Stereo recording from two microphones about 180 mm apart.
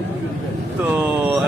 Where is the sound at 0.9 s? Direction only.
10° right (ahead or behind).